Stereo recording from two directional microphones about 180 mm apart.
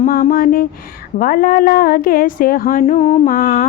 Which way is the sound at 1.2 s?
55° left (ahead or behind).